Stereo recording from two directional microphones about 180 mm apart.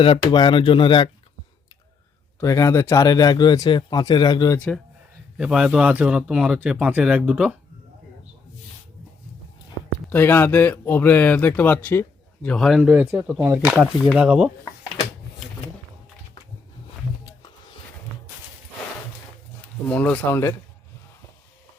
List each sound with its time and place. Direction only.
0.2 s speech: 25° left (ahead or behind)
2.4 s speech: 15° left (ahead or behind)
5.4 s speech: 5° right (ahead or behind)
10.1 s speech: 10° left (ahead or behind)
13.5 s speech: 15° right (ahead or behind)
19.9 s speech: 10° left (ahead or behind)